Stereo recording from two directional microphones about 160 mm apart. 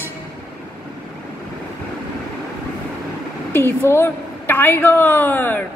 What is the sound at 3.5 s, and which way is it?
A woman's voice, 15° left (ahead or behind).